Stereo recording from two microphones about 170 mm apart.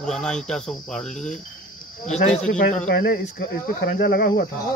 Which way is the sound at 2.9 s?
65° left (ahead or behind).